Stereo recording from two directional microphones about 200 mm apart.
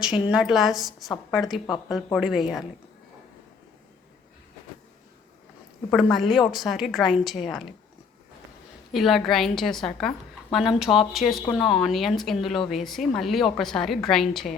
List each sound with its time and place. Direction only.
0.0 s a woman's voice: 5° right (ahead or behind)
5.9 s a woman's voice: centre (ahead or behind)
8.9 s a woman's voice: centre (ahead or behind)